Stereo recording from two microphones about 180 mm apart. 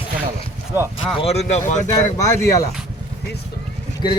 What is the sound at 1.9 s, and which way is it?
Speech, 20° left (ahead or behind).